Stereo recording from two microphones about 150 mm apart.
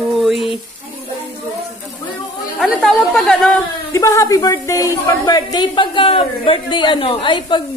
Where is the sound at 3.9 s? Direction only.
20° left (ahead or behind).